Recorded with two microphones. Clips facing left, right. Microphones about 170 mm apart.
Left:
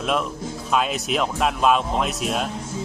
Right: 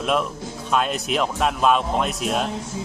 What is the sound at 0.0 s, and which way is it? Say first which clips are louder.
A man's voice: right 1 dB; centre (ahead or behind).